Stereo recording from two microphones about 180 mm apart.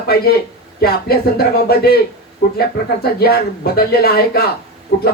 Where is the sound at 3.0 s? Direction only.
60° left (ahead or behind).